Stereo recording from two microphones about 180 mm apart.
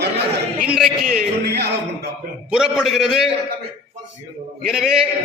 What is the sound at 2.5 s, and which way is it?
Speech, 5° right (ahead or behind).